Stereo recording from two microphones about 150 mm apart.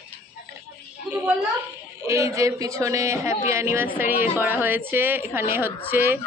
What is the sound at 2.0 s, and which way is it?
A man's voice, 20° right (ahead or behind).